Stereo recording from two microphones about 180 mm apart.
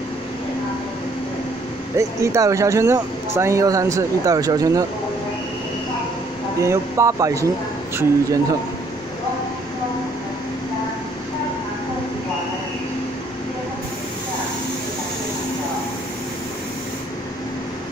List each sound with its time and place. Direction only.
2.0 s speech: 15° right (ahead or behind)
6.6 s speech: 15° right (ahead or behind)